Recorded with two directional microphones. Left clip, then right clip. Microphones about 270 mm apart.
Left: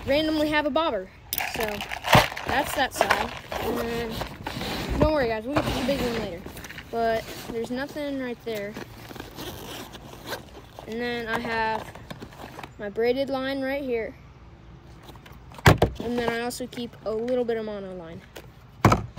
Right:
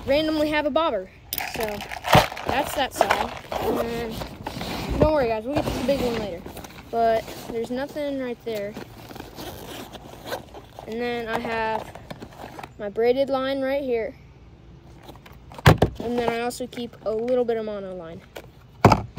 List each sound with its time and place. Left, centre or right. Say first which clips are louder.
0.0 s speech: right 2 dB; centre
5.8 s a sound: right 3 dB; centre
15.6 s vehicle: right 1 dB; centre
16.0 s speech: right 2 dB; centre